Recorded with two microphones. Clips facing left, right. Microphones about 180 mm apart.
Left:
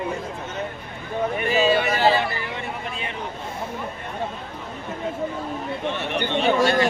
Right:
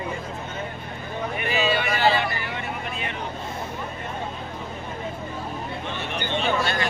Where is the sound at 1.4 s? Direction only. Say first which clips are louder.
Left 4 dB; 40° left (ahead or behind).